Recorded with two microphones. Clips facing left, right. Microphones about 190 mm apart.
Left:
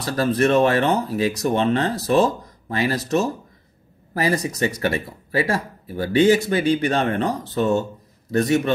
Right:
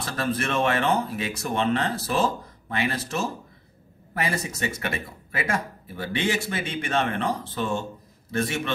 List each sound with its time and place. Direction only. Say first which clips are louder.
0.0 s speech: left 8 dB; 35° left (ahead or behind)